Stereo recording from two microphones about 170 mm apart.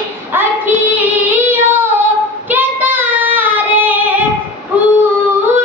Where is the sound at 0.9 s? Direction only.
10° right (ahead or behind).